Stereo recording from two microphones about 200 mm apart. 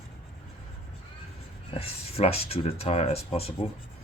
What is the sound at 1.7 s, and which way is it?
Speech, 30° left (ahead or behind).